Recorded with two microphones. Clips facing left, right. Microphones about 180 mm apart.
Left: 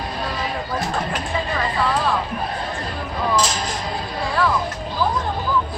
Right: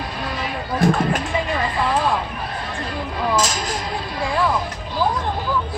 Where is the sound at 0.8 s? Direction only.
55° right (ahead or behind).